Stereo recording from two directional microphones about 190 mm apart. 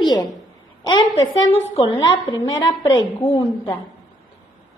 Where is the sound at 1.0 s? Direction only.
25° left (ahead or behind).